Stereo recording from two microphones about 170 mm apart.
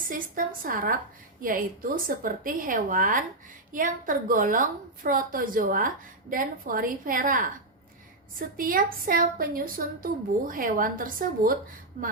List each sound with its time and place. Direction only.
0.1 s a woman's voice: 55° right (ahead or behind)